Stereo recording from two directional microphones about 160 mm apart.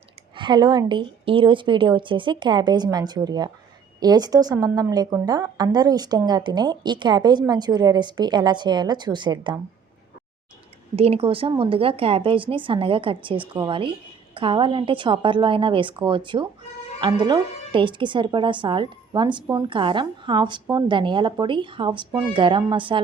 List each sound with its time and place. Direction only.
0.3 s speech: 30° right (ahead or behind)
10.9 s speech: 40° right (ahead or behind)